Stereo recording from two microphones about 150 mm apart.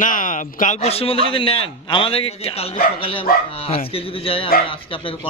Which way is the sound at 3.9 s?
40° left (ahead or behind).